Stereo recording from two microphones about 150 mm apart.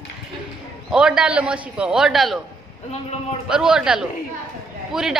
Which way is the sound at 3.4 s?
5° right (ahead or behind).